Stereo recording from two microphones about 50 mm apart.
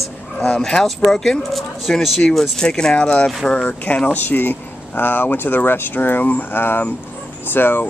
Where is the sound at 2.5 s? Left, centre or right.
Centre.